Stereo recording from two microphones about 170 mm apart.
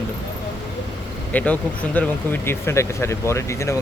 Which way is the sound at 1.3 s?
10° left (ahead or behind).